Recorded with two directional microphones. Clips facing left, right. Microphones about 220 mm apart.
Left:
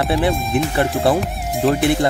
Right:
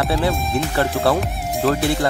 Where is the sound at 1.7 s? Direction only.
20° left (ahead or behind).